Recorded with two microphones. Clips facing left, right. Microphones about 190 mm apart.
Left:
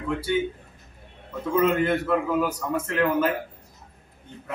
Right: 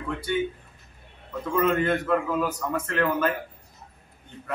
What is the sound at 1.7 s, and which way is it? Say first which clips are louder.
A man's voice: left 1 dB; 10° left (ahead or behind).